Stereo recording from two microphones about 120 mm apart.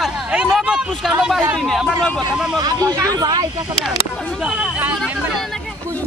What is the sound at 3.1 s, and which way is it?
Speech, 35° right (ahead or behind).